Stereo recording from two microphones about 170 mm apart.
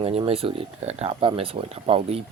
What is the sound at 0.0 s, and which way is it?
Speech, 35° right (ahead or behind).